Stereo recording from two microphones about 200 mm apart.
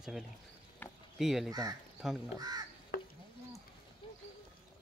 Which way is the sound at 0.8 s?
10° left (ahead or behind).